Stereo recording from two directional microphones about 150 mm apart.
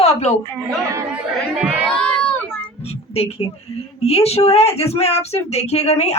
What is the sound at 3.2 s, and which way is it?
Speech, 40° left (ahead or behind).